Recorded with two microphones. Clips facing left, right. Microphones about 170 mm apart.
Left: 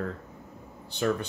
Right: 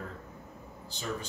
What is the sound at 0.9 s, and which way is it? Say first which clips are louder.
Speech: left 10 dB; 60° left (ahead or behind).